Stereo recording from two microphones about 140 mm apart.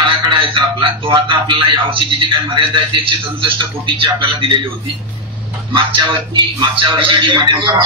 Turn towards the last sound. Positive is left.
turn(degrees=-35)  # may be behind; listen again after turning